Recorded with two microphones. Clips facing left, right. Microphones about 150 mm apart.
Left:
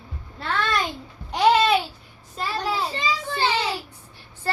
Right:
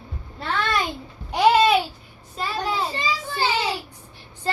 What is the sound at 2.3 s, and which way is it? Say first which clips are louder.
Child singing: even; centre (ahead or behind).